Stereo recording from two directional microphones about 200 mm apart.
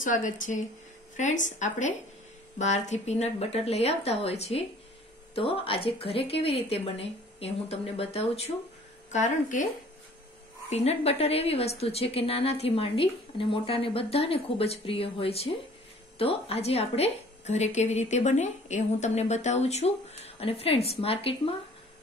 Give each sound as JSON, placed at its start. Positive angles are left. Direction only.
{"t": 0.0, "sound": "a woman's voice", "side_deg": 40}
{"t": 10.7, "sound": "a woman's voice", "side_deg": 35}